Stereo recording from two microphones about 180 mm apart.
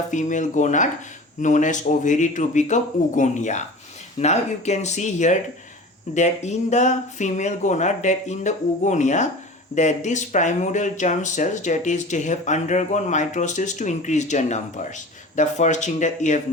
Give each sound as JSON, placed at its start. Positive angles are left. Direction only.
{"t": 0.1, "sound": "speech", "side_deg": 45}